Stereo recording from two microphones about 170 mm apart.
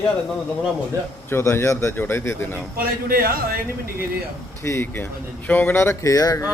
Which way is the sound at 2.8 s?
60° right (ahead or behind).